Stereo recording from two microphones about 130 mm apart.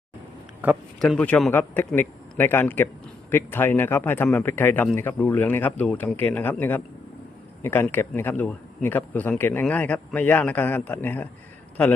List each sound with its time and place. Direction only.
0.6 s speech: 15° right (ahead or behind)
0.9 s speech: 5° left (ahead or behind)